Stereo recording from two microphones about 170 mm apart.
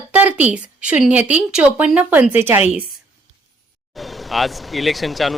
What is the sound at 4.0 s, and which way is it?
Speech, centre (ahead or behind).